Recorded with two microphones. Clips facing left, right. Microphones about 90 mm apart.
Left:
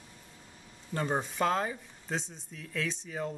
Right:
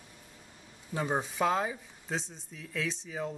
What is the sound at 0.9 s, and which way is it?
Speech, 5° right (ahead or behind).